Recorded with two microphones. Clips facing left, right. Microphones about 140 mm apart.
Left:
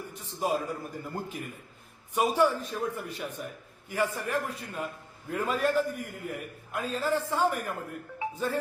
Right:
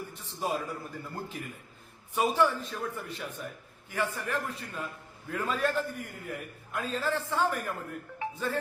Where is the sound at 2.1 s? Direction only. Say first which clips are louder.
Left 1 dB; 10° left (ahead or behind).